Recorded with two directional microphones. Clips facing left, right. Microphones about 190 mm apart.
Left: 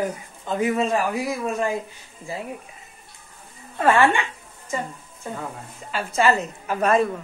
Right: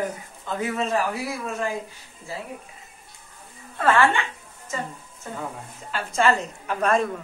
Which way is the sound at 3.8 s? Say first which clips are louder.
Left 2 dB; 15° left (ahead or behind).